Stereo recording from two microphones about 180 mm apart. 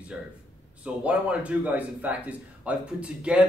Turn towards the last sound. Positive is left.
turn(degrees=-5)  # may be behind; listen again after turning